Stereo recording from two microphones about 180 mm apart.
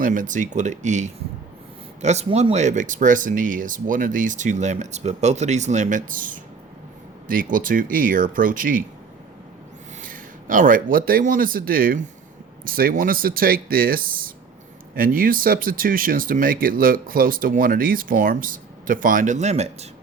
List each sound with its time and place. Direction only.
0.0 s speech: 45° right (ahead or behind)
10.0 s speech: 50° right (ahead or behind)